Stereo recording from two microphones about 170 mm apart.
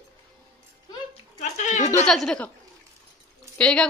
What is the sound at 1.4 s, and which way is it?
Speech, 45° left (ahead or behind).